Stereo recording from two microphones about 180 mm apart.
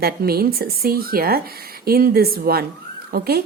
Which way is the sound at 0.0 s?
60° right (ahead or behind).